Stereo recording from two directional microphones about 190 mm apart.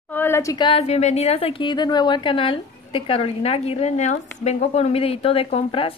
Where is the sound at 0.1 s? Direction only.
10° left (ahead or behind).